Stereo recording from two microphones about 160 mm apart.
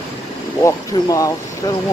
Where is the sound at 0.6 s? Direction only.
20° left (ahead or behind).